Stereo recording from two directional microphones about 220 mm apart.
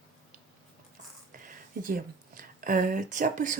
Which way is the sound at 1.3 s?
40° right (ahead or behind).